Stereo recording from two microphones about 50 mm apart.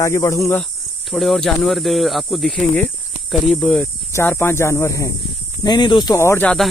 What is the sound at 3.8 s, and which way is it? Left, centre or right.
Speech, left.